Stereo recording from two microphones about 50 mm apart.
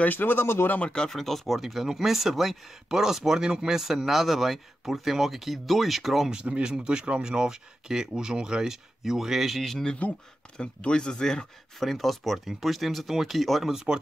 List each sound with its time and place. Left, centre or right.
0.0 s speech: left
0.7 s speech: centre
1.1 s speech: centre
6.3 s speech: right; by 9.8 s centre
10.6 s speech: centre
11.8 s speech: centre